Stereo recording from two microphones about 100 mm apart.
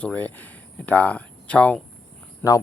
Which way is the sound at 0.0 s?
15° left (ahead or behind).